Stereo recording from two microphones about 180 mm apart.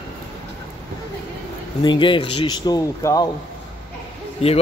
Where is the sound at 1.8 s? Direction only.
25° left (ahead or behind).